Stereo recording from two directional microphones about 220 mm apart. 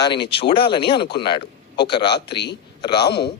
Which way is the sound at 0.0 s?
20° left (ahead or behind).